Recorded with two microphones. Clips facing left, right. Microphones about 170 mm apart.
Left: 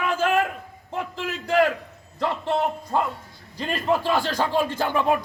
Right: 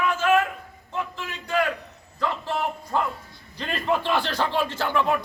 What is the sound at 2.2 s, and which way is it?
Speech, 25° left (ahead or behind).